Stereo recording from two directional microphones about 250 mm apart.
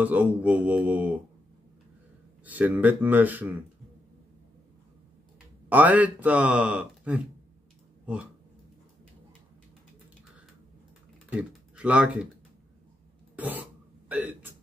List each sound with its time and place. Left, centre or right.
0.0 s speech: centre
2.4 s speech: centre
5.7 s speech: centre
11.2 s speech: centre
13.4 s throat clearing: centre